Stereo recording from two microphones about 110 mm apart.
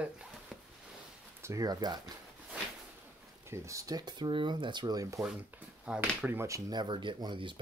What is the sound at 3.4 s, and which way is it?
Speech, 30° right (ahead or behind).